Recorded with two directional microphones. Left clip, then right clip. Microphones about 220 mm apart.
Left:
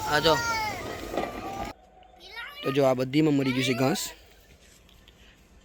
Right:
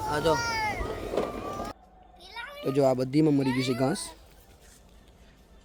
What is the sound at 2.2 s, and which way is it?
Cat, 30° right (ahead or behind).